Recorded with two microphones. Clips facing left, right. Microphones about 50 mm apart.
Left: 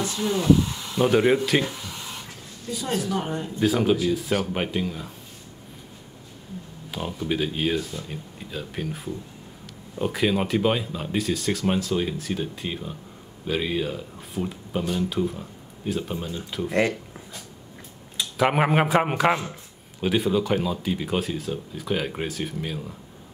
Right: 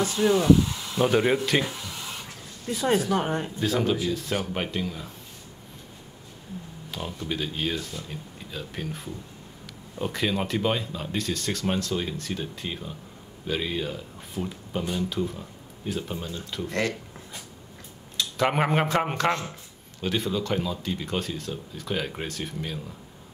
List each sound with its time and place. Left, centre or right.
0.0 s speech: right
0.9 s speech: centre
2.9 s speech: right
3.6 s speech: centre
6.9 s speech: centre
18.1 s speech: centre